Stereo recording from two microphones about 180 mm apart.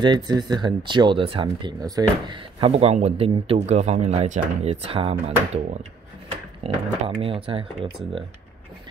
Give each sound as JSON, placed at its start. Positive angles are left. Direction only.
{"t": 0.0, "sound": "speech", "side_deg": -25}